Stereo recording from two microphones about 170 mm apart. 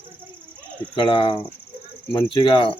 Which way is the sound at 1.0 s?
30° left (ahead or behind).